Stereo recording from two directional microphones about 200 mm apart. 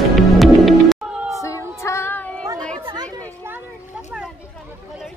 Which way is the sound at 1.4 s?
15° left (ahead or behind).